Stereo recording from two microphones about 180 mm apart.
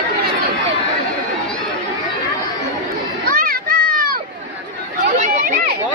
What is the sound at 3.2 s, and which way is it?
Children playing, 55° right (ahead or behind).